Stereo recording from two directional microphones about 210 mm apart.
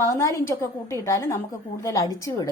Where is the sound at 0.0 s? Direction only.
15° left (ahead or behind).